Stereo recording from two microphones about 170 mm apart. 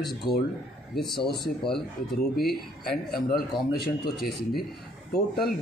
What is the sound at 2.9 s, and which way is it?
Speech, 60° left (ahead or behind).